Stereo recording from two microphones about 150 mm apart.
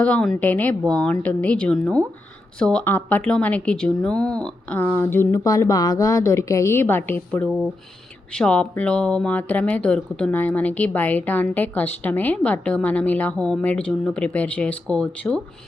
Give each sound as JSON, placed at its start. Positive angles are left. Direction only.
{"t": 0.0, "sound": "a woman's voice", "side_deg": 5}